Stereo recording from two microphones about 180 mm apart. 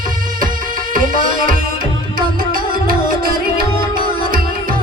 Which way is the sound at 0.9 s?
50° right (ahead or behind).